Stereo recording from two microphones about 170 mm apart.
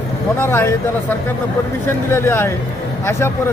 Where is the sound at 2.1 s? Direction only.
15° left (ahead or behind).